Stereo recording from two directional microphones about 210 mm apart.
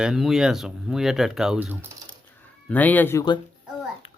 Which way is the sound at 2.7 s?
10° left (ahead or behind).